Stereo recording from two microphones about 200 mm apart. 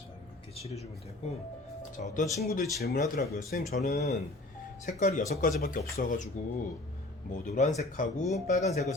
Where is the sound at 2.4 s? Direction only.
50° left (ahead or behind).